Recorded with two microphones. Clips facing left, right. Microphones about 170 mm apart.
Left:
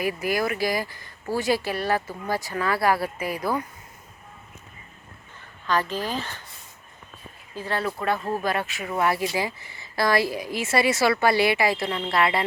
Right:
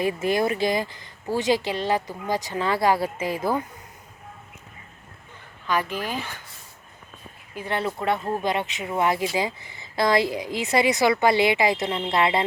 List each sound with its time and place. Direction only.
0.0 s speech: 25° right (ahead or behind)
5.6 s speech: 10° right (ahead or behind)
7.5 s speech: 20° right (ahead or behind)